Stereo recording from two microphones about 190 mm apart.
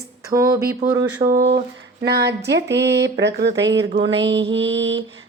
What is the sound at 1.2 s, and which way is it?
Speech, 55° right (ahead or behind).